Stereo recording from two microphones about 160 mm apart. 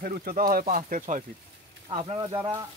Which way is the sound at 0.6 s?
50° right (ahead or behind).